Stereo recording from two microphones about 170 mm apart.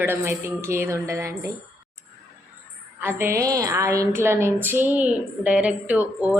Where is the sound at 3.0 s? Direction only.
15° right (ahead or behind).